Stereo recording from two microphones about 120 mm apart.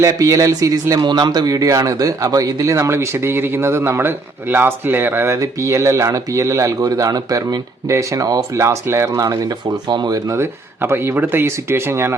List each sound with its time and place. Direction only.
0.0 s a man's voice: 25° right (ahead or behind)